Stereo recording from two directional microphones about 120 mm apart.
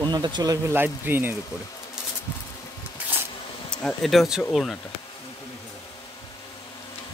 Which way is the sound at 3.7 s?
5° left (ahead or behind).